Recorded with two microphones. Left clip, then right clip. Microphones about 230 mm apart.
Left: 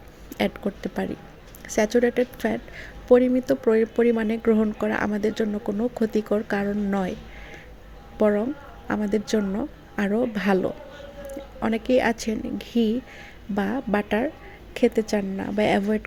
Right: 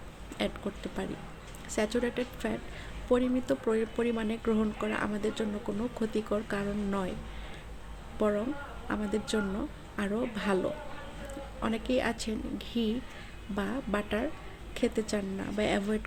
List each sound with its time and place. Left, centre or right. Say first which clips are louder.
0.3 s a woman's voice: left 8 dB; left
8.2 s a woman's voice: left 8 dB; left